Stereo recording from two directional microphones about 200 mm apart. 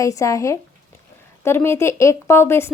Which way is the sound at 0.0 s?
15° left (ahead or behind).